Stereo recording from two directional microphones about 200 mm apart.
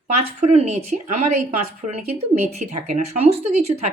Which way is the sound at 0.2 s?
30° right (ahead or behind).